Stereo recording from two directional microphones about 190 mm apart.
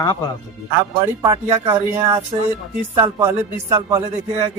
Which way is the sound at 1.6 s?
25° right (ahead or behind).